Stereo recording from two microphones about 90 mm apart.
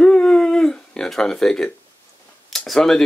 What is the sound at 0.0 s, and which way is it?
Dog, 10° left (ahead or behind).